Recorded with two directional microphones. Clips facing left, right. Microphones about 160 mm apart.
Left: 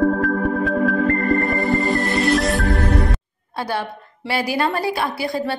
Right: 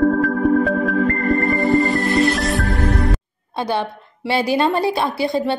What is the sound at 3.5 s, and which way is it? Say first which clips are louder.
A woman's voice: right 3 dB; 20° right (ahead or behind).